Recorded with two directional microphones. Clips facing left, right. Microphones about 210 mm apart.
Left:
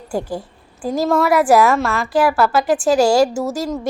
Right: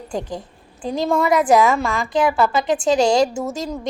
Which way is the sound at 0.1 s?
10° left (ahead or behind).